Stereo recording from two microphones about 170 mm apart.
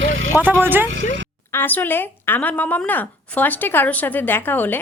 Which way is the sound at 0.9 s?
90° right.